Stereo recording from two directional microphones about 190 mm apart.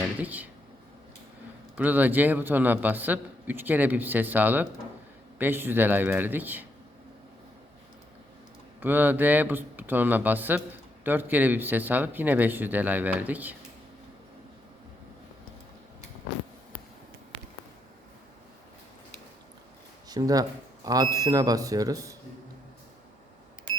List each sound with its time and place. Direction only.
0.0 s a sound: 10° right (ahead or behind)
1.7 s a man's voice: 10° right (ahead or behind)
8.8 s a man's voice: 10° right (ahead or behind)
20.1 s speech: 20° right (ahead or behind)